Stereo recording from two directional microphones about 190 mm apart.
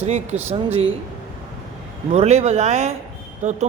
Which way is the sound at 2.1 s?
35° right (ahead or behind).